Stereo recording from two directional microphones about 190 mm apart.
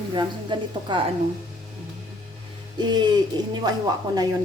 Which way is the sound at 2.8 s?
25° right (ahead or behind).